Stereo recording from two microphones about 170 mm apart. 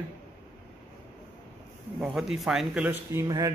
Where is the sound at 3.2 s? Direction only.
20° right (ahead or behind).